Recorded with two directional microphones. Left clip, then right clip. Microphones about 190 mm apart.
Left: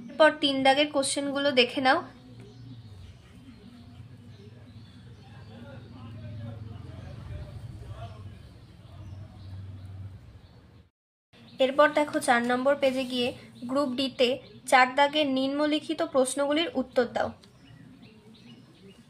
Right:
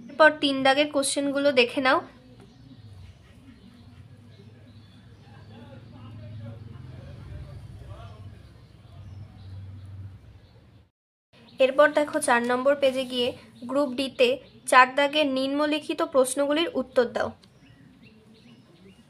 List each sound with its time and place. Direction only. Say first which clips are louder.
0.2 s a woman's voice: right 2 dB; 35° right (ahead or behind)
11.5 s a woman's voice: right 3 dB; 25° right (ahead or behind)